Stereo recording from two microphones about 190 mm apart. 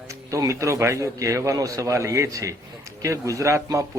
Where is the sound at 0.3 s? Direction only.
15° right (ahead or behind).